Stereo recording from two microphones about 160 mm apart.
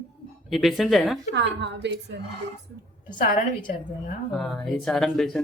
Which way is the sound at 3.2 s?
55° left (ahead or behind).